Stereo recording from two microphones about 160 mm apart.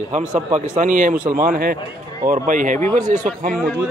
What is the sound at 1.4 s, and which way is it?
Speech, 65° right (ahead or behind).